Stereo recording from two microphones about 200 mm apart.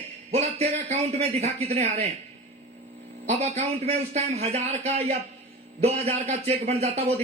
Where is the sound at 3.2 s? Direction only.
35° right (ahead or behind).